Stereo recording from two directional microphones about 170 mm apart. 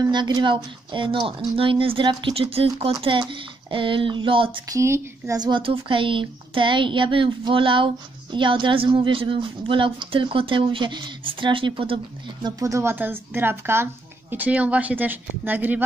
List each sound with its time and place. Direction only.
0.0 s speech: 25° right (ahead or behind)
4.6 s speech: 15° right (ahead or behind)
12.4 s speech: 20° right (ahead or behind)